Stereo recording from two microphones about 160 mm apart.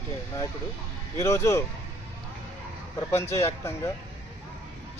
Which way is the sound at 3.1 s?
15° left (ahead or behind).